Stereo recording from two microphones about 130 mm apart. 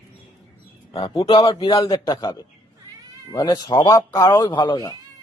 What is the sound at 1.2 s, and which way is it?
A man's voice, 40° left (ahead or behind).